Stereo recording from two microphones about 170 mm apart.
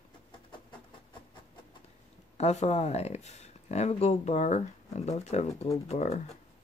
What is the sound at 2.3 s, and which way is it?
Speech, 40° left (ahead or behind).